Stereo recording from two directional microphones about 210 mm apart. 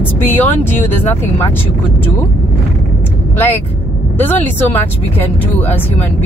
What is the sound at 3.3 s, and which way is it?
Speech, 10° left (ahead or behind).